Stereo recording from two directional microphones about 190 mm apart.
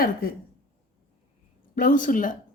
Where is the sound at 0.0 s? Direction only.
50° left (ahead or behind).